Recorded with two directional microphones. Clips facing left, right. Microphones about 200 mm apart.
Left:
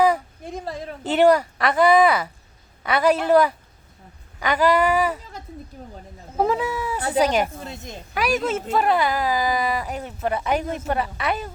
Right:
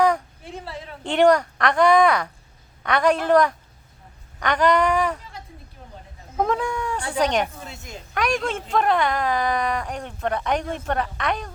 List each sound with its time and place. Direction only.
0.5 s a sound: 40° left (ahead or behind)
1.0 s speech: 5° left (ahead or behind)
6.3 s speech: 5° left (ahead or behind)